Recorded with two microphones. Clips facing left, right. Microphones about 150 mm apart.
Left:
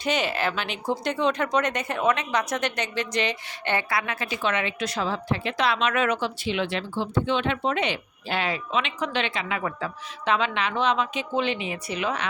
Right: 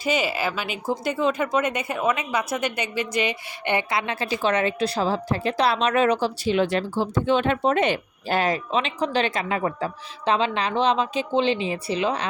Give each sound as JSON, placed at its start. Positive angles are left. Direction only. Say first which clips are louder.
{"t": 0.0, "sound": "speech", "louder": "right 1 dB", "side_deg": -5}